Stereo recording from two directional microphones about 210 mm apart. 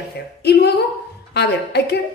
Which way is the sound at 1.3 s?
50° left (ahead or behind).